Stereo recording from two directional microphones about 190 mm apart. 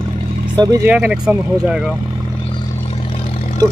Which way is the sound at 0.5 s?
20° right (ahead or behind).